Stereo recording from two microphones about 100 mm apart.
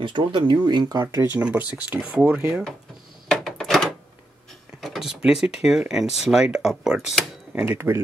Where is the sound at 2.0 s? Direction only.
10° right (ahead or behind).